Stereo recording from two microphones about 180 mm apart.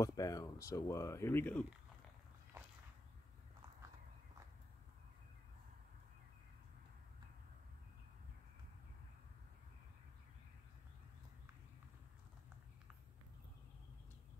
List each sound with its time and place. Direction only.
0.0 s speech: 20° left (ahead or behind)